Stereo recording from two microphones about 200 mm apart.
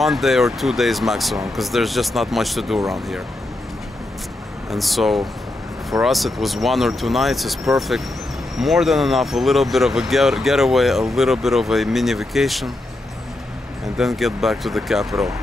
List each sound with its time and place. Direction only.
0.0 s speech: centre (ahead or behind)
4.6 s speech: centre (ahead or behind)
13.9 s speech: centre (ahead or behind)